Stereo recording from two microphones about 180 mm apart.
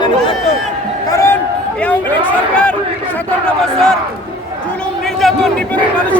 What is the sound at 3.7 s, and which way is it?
Speech, centre (ahead or behind).